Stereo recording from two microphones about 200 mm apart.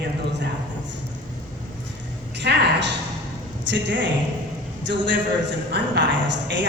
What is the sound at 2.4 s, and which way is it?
A woman's voice, 60° right (ahead or behind).